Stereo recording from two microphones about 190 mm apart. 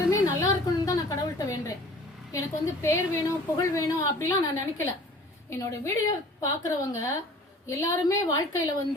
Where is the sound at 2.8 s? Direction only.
15° left (ahead or behind).